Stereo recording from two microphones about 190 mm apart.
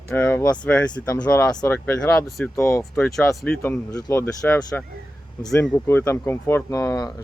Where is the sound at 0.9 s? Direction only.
20° left (ahead or behind).